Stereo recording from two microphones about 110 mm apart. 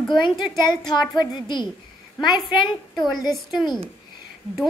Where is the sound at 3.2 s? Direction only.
5° right (ahead or behind).